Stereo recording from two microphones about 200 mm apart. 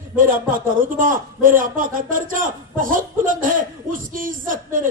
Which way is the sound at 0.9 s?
40° right (ahead or behind).